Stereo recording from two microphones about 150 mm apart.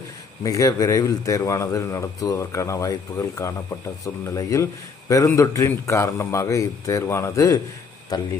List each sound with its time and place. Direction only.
0.4 s a man's voice: 25° left (ahead or behind)